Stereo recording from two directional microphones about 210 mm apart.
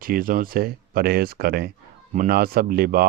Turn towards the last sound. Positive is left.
turn(degrees=-45)  # may be behind; listen again after turning